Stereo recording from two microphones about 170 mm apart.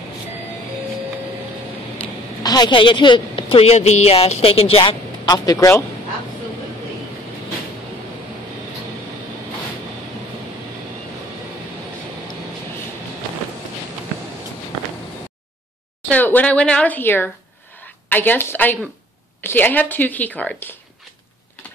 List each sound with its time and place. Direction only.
2.4 s a woman's voice: 25° left (ahead or behind)
16.1 s a woman's voice: 10° left (ahead or behind)